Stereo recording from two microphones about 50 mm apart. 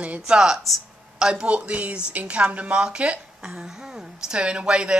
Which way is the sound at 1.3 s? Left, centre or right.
Right.